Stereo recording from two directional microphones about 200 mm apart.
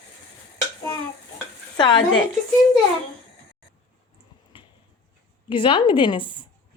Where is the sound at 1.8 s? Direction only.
20° left (ahead or behind).